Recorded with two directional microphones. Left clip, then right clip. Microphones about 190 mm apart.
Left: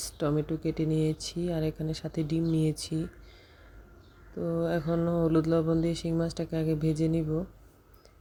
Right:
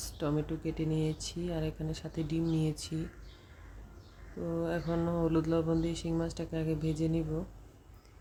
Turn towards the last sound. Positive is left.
turn(degrees=25)  # may be behind; listen again after turning